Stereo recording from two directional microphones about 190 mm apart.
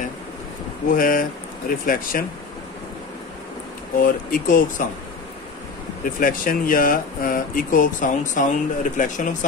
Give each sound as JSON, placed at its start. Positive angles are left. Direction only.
{"t": 0.8, "sound": "speech", "side_deg": 45}
{"t": 4.0, "sound": "speech", "side_deg": 45}
{"t": 6.1, "sound": "speech", "side_deg": 45}